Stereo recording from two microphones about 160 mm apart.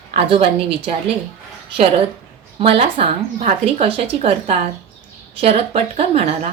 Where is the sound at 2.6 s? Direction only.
35° right (ahead or behind).